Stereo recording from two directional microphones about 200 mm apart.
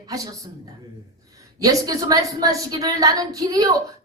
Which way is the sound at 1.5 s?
20° right (ahead or behind).